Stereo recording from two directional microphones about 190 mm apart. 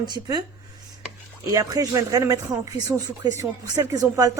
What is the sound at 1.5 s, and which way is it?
Speech, 15° right (ahead or behind).